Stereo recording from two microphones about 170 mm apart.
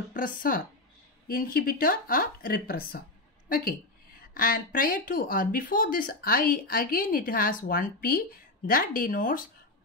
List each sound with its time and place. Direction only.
0.1 s a woman's voice: 55° left (ahead or behind)